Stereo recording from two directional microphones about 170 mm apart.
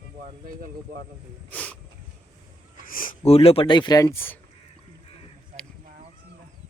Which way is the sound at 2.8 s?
55° left (ahead or behind).